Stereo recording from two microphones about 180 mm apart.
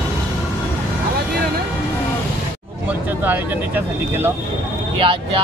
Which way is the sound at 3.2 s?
10° right (ahead or behind).